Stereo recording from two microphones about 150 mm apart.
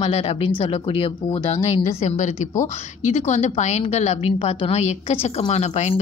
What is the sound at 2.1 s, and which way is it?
Speech, 55° left (ahead or behind).